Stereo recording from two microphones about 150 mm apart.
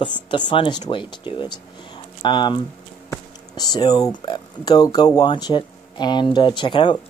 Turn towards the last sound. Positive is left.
turn(degrees=30)  # may be behind; listen again after turning